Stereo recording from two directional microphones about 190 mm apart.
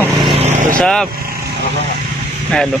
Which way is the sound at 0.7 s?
5° left (ahead or behind).